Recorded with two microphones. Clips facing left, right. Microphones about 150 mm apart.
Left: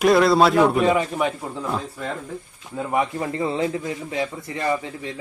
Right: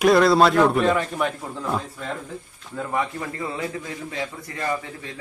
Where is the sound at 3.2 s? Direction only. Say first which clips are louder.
Left 6 dB; 25° left (ahead or behind).